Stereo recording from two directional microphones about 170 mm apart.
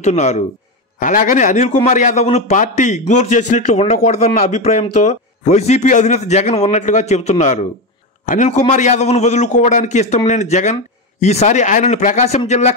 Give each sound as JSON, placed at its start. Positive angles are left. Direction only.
{"t": 0.0, "sound": "a man's voice", "side_deg": 40}